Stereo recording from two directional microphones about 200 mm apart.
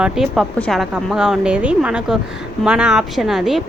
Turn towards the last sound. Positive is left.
turn(degrees=0)  # may be behind; listen again after turning